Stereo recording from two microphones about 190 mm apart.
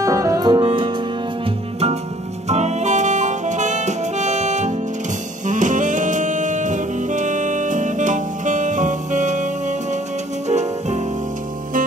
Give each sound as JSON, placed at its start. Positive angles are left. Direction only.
{"t": 0.0, "sound": "music", "side_deg": -15}
{"t": 2.4, "sound": "saxophone", "side_deg": -35}
{"t": 10.5, "sound": "music", "side_deg": -35}